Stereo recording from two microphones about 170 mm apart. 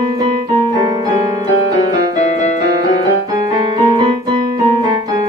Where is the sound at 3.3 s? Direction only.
25° right (ahead or behind).